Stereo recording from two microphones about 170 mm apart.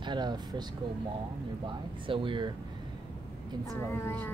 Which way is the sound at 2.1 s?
30° right (ahead or behind).